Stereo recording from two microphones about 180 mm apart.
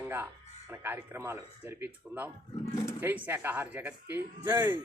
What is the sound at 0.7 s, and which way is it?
Speech, 10° right (ahead or behind).